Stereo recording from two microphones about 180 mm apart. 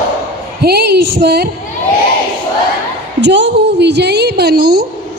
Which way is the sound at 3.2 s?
70° right (ahead or behind).